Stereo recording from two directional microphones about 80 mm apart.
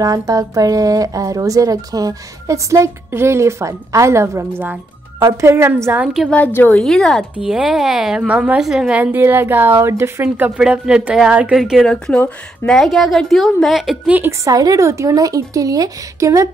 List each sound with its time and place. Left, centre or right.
0.0 s a woman's voice: right
6.3 s a woman's voice: left
6.8 s a woman's voice: centre
7.3 s a woman's voice: centre
8.9 s a woman's voice: right; by 11.8 s centre
11.8 s a woman's voice: centre
14.0 s a woman's voice: right
14.4 s speech: right